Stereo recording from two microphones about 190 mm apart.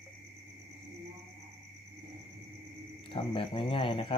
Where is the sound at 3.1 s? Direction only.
25° left (ahead or behind).